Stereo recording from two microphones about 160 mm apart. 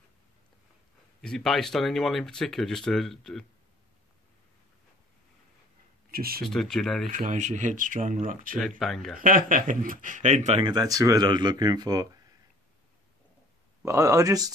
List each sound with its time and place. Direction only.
1.2 s speech: 5° left (ahead or behind)
6.1 s speech: 65° right (ahead or behind)
6.4 s speech: centre (ahead or behind)
7.1 s speech: 55° right (ahead or behind)
8.5 s speech: centre (ahead or behind)
9.2 s speech: 60° right (ahead or behind)
10.6 s speech: 25° right (ahead or behind)
13.8 s speech: 20° right (ahead or behind)